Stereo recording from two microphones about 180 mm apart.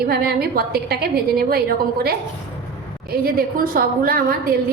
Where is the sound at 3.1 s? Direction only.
55° right (ahead or behind).